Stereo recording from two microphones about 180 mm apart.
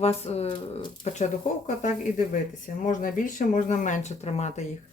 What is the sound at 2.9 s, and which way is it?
Speech, 45° left (ahead or behind).